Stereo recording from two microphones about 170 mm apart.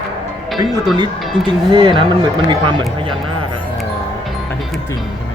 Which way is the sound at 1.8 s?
30° right (ahead or behind).